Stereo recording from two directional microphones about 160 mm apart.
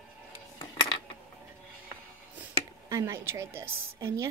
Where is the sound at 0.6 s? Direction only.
30° left (ahead or behind).